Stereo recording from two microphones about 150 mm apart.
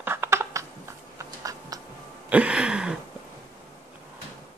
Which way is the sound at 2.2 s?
10° right (ahead or behind).